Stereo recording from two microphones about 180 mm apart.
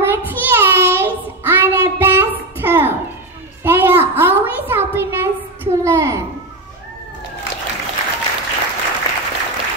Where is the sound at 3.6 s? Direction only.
15° right (ahead or behind).